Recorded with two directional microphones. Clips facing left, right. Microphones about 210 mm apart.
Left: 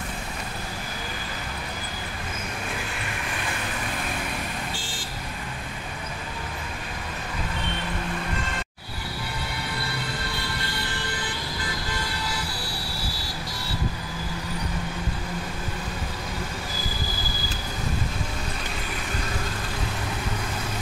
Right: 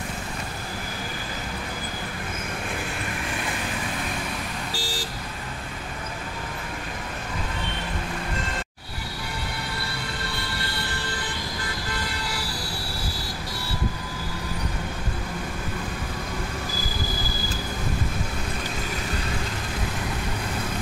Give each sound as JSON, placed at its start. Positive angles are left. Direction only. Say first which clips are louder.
{"t": 4.7, "sound": "vehicle", "louder": "right 4 dB", "side_deg": -40}